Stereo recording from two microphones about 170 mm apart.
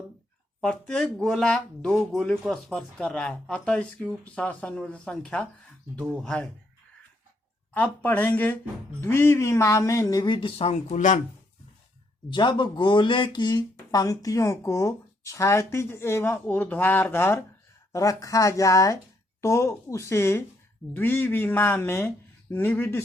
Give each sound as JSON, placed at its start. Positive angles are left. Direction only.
{"t": 0.6, "sound": "speech", "side_deg": 5}
{"t": 7.7, "sound": "speech", "side_deg": 10}
{"t": 12.3, "sound": "speech", "side_deg": 25}